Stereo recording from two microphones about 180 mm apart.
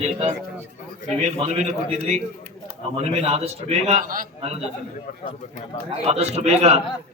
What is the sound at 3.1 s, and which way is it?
Speech, 35° right (ahead or behind).